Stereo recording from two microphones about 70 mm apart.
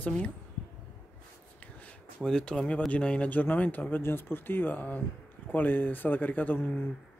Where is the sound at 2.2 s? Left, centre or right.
Centre.